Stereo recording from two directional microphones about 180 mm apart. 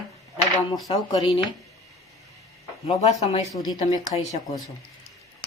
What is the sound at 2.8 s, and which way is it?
Speech, 35° left (ahead or behind).